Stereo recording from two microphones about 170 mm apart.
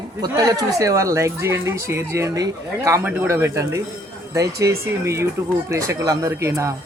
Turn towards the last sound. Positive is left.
turn(degrees=-15)  # may be behind; listen again after turning